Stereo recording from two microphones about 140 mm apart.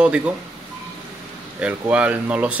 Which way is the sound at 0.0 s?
10° right (ahead or behind).